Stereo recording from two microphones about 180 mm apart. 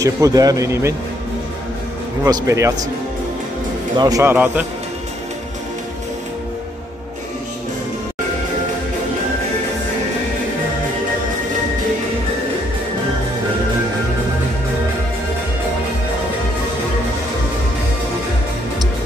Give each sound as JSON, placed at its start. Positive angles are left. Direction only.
{"t": 0.0, "sound": "speech", "side_deg": -20}
{"t": 2.2, "sound": "a man's voice", "side_deg": -15}
{"t": 3.9, "sound": "a man's voice", "side_deg": -20}